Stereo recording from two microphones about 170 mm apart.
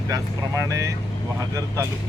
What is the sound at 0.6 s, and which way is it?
Speech, 20° right (ahead or behind).